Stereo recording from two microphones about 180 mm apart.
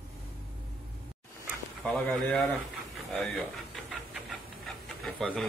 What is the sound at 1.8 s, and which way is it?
Speech, 5° left (ahead or behind).